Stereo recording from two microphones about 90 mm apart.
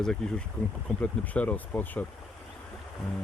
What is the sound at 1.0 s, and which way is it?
Speech, 15° left (ahead or behind).